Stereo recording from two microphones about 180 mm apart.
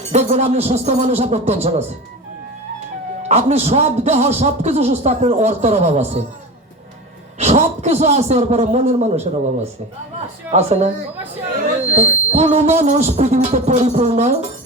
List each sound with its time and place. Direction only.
0.1 s a man's voice: 40° right (ahead or behind)
3.2 s a man's voice: 35° right (ahead or behind)
7.3 s a man's voice: 40° right (ahead or behind)
10.5 s a man's voice: 35° right (ahead or behind)
11.9 s a man's voice: 35° right (ahead or behind)